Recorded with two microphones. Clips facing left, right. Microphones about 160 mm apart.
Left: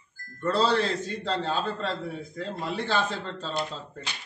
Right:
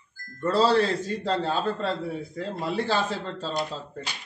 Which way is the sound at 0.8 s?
10° right (ahead or behind).